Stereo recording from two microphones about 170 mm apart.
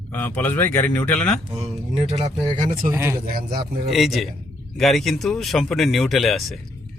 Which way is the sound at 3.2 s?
55° right (ahead or behind).